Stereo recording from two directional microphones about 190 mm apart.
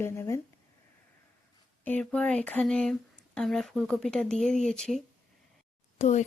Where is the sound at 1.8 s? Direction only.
5° left (ahead or behind).